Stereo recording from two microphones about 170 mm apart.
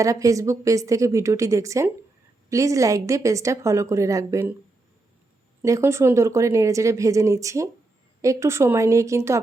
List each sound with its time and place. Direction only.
0.0 s a woman's voice: 20° right (ahead or behind)
5.6 s a woman's voice: 15° right (ahead or behind)